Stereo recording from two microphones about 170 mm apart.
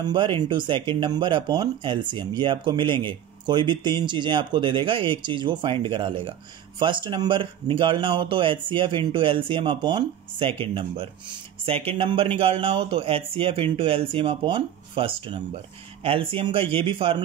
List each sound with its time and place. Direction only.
0.0 s speech: 30° right (ahead or behind)